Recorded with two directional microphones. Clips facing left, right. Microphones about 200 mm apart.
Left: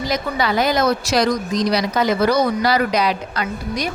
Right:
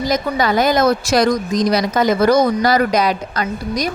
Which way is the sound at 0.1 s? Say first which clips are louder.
Right 3 dB; 45° right (ahead or behind).